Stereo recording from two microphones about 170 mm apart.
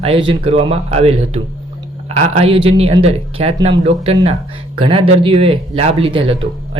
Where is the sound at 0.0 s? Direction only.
35° right (ahead or behind).